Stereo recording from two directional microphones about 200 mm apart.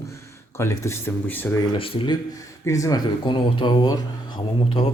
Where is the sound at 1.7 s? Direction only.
25° left (ahead or behind).